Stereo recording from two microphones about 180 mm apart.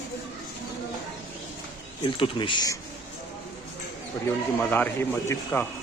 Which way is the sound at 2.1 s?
25° left (ahead or behind).